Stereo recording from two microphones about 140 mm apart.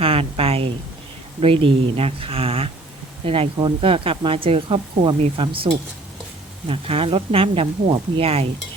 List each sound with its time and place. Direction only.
0.0 s a sound: 40° right (ahead or behind)
1.4 s speech: 40° right (ahead or behind)
6.7 s speech: 45° right (ahead or behind)